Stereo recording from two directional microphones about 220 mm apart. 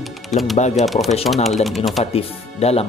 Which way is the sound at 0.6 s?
30° left (ahead or behind).